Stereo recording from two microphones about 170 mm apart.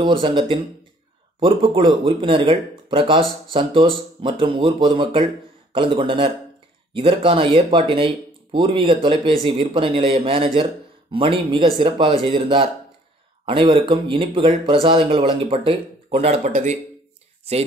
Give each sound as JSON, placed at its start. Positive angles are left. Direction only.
{"t": 0.0, "sound": "speech", "side_deg": -25}